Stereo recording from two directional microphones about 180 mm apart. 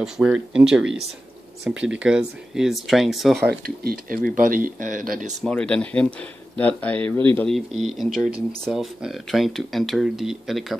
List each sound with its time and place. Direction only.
0.0 s speech: 5° right (ahead or behind)
3.4 s speech: 55° right (ahead or behind)
5.4 s speech: 5° left (ahead or behind)